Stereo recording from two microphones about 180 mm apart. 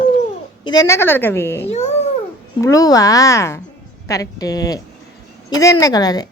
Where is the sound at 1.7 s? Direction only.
35° left (ahead or behind).